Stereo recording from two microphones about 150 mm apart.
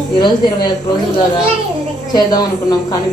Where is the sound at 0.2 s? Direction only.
30° left (ahead or behind).